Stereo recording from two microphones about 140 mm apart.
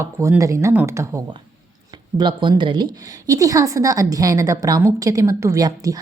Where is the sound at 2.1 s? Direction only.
30° right (ahead or behind).